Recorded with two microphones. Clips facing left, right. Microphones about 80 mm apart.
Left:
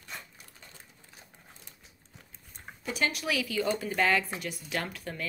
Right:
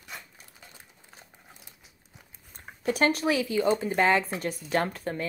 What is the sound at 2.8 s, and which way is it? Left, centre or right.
Speech, right.